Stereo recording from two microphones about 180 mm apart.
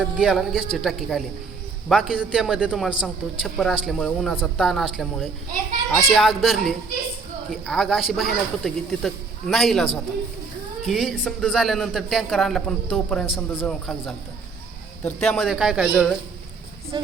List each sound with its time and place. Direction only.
0.0 s speech: 5° right (ahead or behind)
16.9 s speech: 25° right (ahead or behind)